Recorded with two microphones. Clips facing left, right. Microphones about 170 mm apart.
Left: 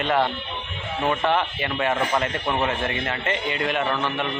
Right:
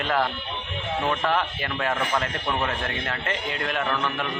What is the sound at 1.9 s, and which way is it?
Speech, 20° left (ahead or behind).